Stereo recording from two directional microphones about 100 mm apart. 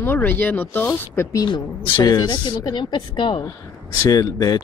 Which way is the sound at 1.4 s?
45° left (ahead or behind).